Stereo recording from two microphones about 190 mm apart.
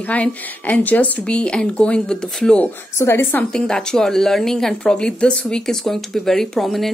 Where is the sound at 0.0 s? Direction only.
5° left (ahead or behind).